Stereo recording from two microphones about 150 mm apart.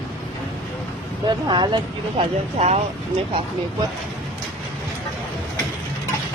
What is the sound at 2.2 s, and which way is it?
Speech, 45° right (ahead or behind).